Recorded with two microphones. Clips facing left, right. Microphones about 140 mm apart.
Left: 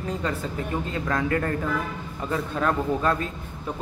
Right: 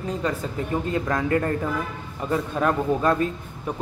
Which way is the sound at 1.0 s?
25° right (ahead or behind).